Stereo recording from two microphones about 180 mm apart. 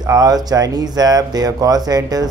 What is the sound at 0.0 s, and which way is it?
A man's voice, 20° right (ahead or behind).